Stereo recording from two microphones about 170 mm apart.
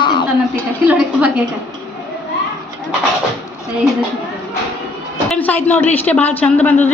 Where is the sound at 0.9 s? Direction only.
5° right (ahead or behind).